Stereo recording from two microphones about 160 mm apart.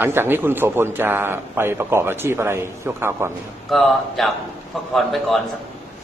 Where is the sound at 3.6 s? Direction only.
Centre (ahead or behind).